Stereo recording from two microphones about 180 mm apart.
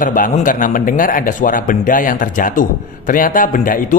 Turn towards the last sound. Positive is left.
turn(degrees=50)  # may be behind; listen again after turning